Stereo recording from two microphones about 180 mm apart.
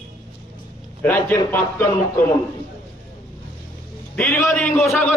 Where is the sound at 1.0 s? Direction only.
10° left (ahead or behind).